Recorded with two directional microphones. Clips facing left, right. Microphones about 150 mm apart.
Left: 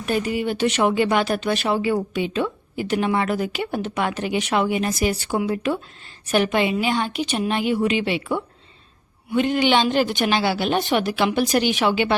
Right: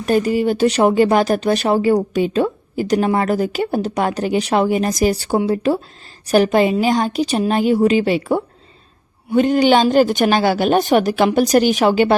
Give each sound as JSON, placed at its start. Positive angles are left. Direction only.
{"t": 0.0, "sound": "a woman's voice", "side_deg": -40}